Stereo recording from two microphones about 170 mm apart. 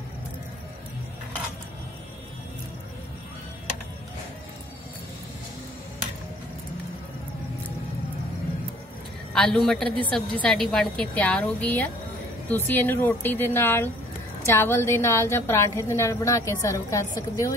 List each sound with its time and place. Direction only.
9.3 s a man's voice: 5° left (ahead or behind)